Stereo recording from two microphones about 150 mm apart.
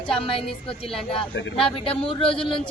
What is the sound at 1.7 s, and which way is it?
Speech, 35° left (ahead or behind).